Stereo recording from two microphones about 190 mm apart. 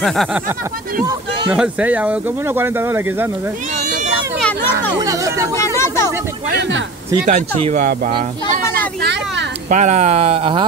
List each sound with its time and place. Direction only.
0.0 s speech: centre (ahead or behind)
1.5 s speech: 5° right (ahead or behind)
5.0 s chatter: 15° right (ahead or behind)
5.8 s a sound: 15° left (ahead or behind)
7.2 s speech: 40° right (ahead or behind)
9.0 s speech: 65° right (ahead or behind)
9.7 s speech: 40° right (ahead or behind)